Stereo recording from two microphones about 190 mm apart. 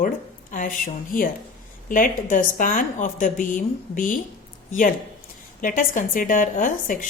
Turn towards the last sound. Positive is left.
turn(degrees=45)  # may be behind; listen again after turning